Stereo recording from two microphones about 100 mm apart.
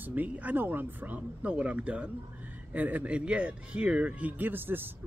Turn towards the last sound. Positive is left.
turn(degrees=-20)  # may be behind; listen again after turning